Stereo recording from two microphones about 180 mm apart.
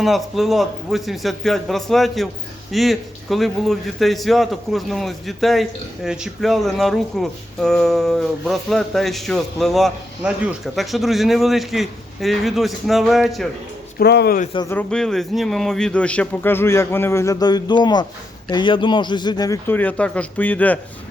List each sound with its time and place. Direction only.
0.0 s speech: centre (ahead or behind)
14.0 s speech: 65° left (ahead or behind)
14.7 s a man's voice: 5° left (ahead or behind)